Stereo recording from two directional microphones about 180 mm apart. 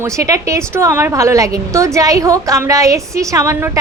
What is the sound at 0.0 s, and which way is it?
A woman's voice, 15° right (ahead or behind).